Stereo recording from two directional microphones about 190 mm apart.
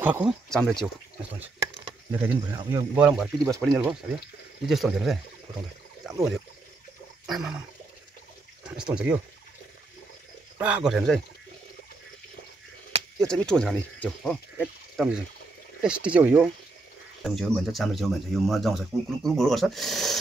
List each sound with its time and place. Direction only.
0.0 s speech: 10° right (ahead or behind)
0.5 s speech: 5° left (ahead or behind)
2.0 s speech: 10° right (ahead or behind)
3.0 s speech: 5° right (ahead or behind)
4.6 s speech: centre (ahead or behind)
7.2 s a sound: centre (ahead or behind)
8.6 s speech: 5° right (ahead or behind)
10.6 s speech: 5° right (ahead or behind)
12.9 s a sound: 30° right (ahead or behind)
13.3 s speech: 5° left (ahead or behind)